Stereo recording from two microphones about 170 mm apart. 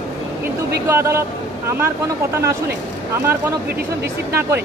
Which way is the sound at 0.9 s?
15° right (ahead or behind).